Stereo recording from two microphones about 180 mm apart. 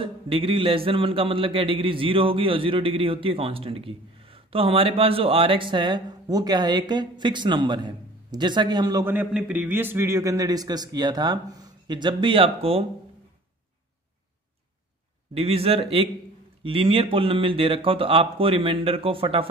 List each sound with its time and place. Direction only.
0.0 s speech: 30° right (ahead or behind)
15.3 s speech: 30° right (ahead or behind)